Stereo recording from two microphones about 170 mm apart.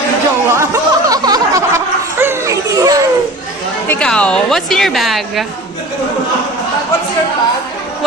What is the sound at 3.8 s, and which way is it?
A woman's voice, 10° left (ahead or behind).